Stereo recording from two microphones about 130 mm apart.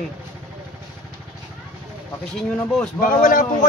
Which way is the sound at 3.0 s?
85° left.